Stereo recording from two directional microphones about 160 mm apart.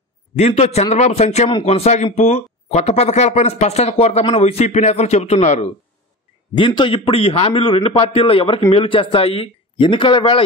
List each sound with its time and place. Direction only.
0.4 s a man's voice: 40° left (ahead or behind)
6.5 s a man's voice: 30° left (ahead or behind)